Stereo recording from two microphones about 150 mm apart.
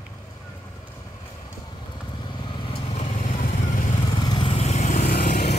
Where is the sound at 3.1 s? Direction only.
60° left (ahead or behind).